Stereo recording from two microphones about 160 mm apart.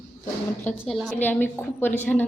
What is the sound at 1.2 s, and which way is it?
Speech, 10° left (ahead or behind).